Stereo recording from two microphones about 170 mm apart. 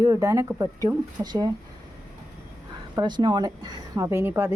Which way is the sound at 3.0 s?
25° right (ahead or behind).